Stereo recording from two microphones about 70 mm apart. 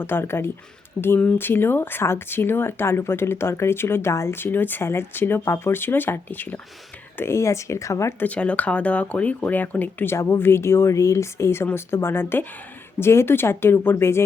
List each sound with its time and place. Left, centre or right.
0.0 s speech: left
7.3 s speech: left
8.2 s speech: centre; by 14.3 s left